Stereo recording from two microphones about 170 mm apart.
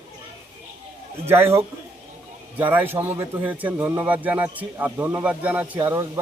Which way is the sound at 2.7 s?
10° right (ahead or behind).